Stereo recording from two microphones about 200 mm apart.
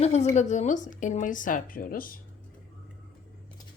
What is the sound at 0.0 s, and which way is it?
A woman's voice, 35° left (ahead or behind).